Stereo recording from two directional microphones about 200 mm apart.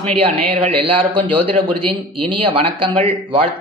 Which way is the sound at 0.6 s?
30° right (ahead or behind).